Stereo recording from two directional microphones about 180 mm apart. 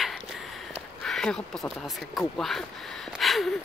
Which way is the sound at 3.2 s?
Centre (ahead or behind).